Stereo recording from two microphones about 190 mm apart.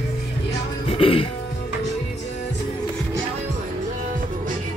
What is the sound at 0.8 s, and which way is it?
Music, 30° left (ahead or behind).